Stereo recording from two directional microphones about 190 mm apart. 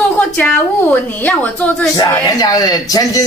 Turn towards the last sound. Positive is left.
turn(degrees=20)  # may be behind; listen again after turning